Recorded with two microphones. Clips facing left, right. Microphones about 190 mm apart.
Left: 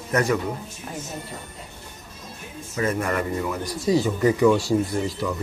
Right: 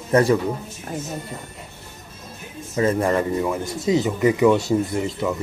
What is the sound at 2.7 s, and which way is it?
Speech, 30° right (ahead or behind).